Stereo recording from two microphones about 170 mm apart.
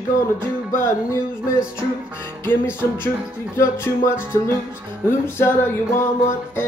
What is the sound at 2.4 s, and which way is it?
Music, 15° left (ahead or behind).